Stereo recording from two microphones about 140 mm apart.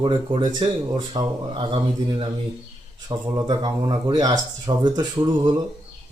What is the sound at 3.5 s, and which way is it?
Speech, 35° right (ahead or behind).